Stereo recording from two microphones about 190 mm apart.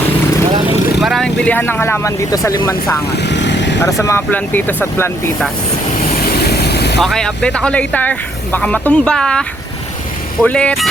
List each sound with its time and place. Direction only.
1.0 s speech: centre (ahead or behind)
3.2 s vehicle: 65° left (ahead or behind)
3.8 s speech: 15° left (ahead or behind)
6.4 s vehicle: 60° left (ahead or behind)
7.0 s speech: centre (ahead or behind)